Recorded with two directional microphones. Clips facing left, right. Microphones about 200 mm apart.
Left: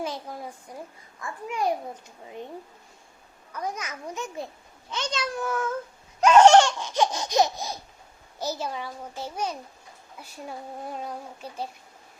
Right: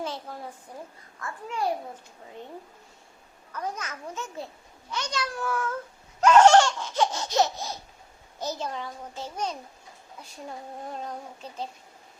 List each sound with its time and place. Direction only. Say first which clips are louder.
0.0 s a woman's voice: left 2 dB; 15° left (ahead or behind)
0.7 s laughter: left 1 dB; 15° left (ahead or behind)
3.5 s laughter: left 1 dB; 10° left (ahead or behind)
4.9 s a child's voice: left 2 dB; 20° left (ahead or behind)
6.1 s laughter: left 2 dB; 20° left (ahead or behind)
10.8 s laughter: left 1 dB; 10° left (ahead or behind)